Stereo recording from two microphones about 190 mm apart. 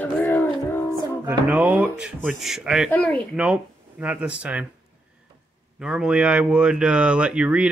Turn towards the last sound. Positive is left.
turn(degrees=-5)  # may be behind; listen again after turning